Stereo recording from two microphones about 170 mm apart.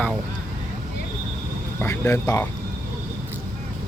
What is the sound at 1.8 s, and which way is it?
Speech, 15° left (ahead or behind).